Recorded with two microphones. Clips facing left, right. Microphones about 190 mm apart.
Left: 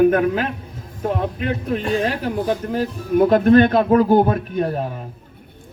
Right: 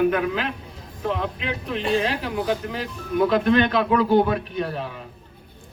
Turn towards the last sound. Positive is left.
turn(degrees=45)  # may be behind; listen again after turning